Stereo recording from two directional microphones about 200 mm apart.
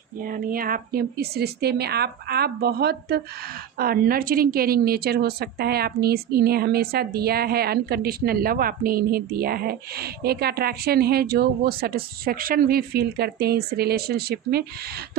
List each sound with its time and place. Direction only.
0.2 s a woman's voice: 45° right (ahead or behind)